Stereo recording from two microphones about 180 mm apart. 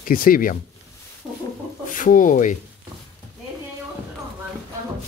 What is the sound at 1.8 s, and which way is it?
Speech, 50° left (ahead or behind).